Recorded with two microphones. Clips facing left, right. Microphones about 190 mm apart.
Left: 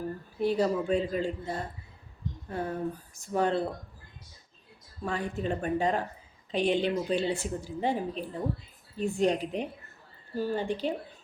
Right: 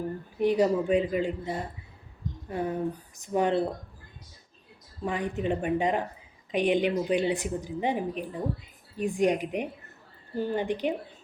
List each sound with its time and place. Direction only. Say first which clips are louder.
0.3 s a woman's voice: right 3 dB; 15° right (ahead or behind)
5.0 s a woman's voice: right 3 dB; 15° right (ahead or behind)